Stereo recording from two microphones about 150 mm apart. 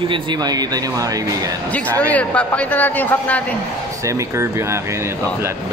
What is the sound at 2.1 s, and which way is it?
Speech, 10° left (ahead or behind).